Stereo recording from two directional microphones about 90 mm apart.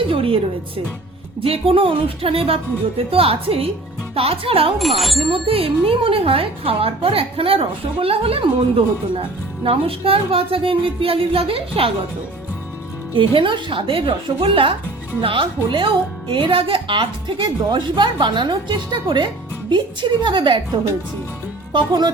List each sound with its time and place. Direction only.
0.1 s speech: 90° right
1.4 s speech: 90° right
4.8 s speech: centre (ahead or behind)
5.3 s speech: 90° right
13.1 s a woman's voice: 65° right (ahead or behind)
21.7 s a woman's voice: 55° right (ahead or behind)